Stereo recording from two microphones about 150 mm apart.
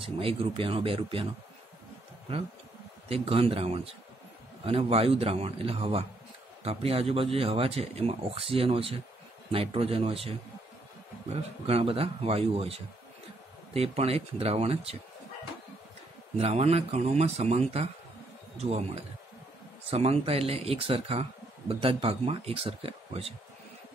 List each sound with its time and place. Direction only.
0.0 s speech: 40° right (ahead or behind)
3.1 s speech: 40° right (ahead or behind)
11.6 s speech: 40° right (ahead or behind)
16.3 s speech: 45° right (ahead or behind)